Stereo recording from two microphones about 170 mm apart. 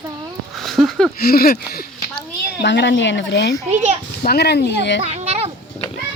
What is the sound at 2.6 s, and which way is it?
Speech, 90° left.